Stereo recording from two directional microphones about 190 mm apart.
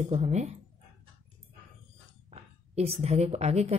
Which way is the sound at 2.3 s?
35° right (ahead or behind).